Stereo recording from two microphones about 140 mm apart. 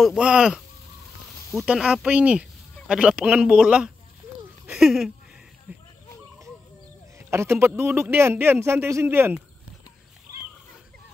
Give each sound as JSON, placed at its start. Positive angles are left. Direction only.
{"t": 0.0, "sound": "speech", "side_deg": -5}
{"t": 5.7, "sound": "a sound", "side_deg": -10}
{"t": 7.2, "sound": "speech", "side_deg": -20}